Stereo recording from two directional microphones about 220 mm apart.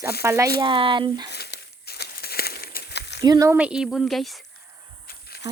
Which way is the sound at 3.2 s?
15° right (ahead or behind).